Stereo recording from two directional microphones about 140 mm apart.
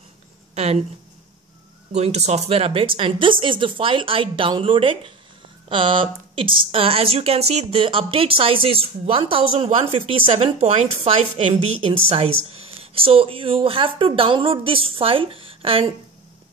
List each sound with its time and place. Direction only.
2.0 s a woman's voice: 50° right (ahead or behind)